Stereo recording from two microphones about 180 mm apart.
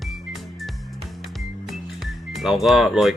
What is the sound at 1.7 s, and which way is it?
Music, centre (ahead or behind).